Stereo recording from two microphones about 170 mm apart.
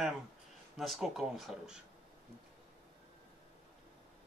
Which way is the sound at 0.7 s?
Centre (ahead or behind).